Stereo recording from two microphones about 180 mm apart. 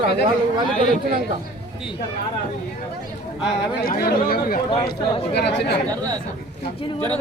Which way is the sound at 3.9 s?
55° left (ahead or behind).